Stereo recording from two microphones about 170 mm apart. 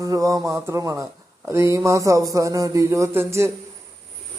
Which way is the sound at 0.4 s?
20° right (ahead or behind).